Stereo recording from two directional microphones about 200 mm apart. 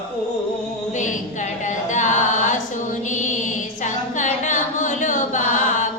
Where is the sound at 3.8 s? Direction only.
40° left (ahead or behind).